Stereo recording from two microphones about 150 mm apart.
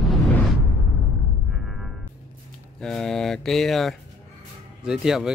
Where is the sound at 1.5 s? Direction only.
Centre (ahead or behind).